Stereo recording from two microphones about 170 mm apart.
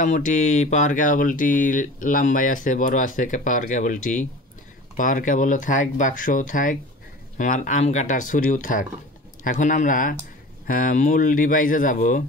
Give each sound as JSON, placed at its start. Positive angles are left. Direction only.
{"t": 0.0, "sound": "speech", "side_deg": 50}